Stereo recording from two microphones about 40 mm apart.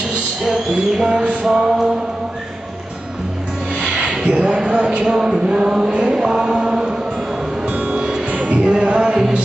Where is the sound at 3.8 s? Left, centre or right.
Right.